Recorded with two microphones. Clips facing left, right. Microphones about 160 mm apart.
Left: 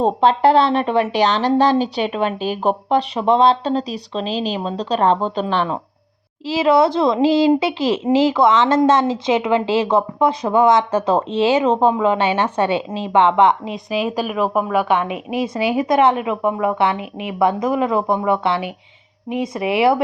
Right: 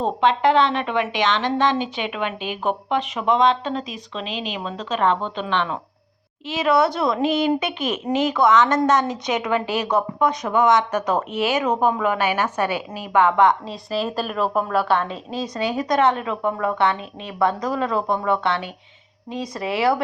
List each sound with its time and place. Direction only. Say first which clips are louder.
0.0 s a woman's voice: left 4 dB; 35° left (ahead or behind)